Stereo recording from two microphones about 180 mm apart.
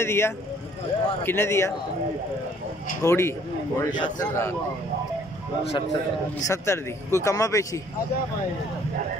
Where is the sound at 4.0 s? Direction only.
25° left (ahead or behind).